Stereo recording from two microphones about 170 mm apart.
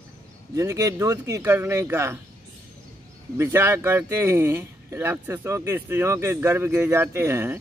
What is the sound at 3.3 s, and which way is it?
Speech, 15° right (ahead or behind).